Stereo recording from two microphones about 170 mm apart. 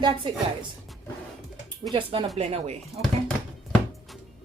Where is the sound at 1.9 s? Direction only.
30° right (ahead or behind).